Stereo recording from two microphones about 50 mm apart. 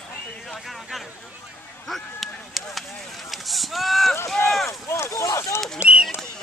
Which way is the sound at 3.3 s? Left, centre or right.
Centre.